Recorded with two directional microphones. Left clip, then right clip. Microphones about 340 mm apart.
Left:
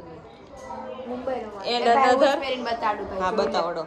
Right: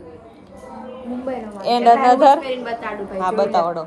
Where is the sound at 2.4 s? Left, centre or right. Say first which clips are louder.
Right 3 dB; left.